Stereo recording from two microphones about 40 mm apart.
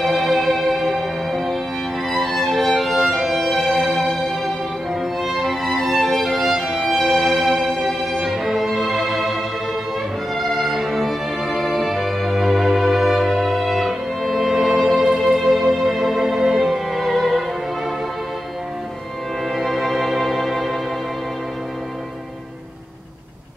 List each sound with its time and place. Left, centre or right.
0.0 s music: centre
5.2 s music: centre
15.0 s music: centre
15.3 s music: centre
16.6 s music: centre
19.5 s music: centre